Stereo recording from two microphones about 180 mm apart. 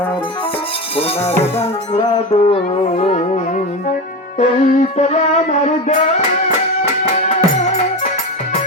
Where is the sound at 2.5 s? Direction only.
30° left (ahead or behind).